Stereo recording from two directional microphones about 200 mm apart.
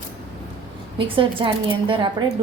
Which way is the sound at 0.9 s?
25° right (ahead or behind).